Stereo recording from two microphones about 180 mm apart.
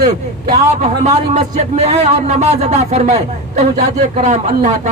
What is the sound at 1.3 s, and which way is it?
Speech, 35° right (ahead or behind).